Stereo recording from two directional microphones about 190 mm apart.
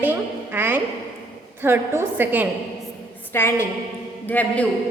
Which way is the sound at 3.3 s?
15° left (ahead or behind).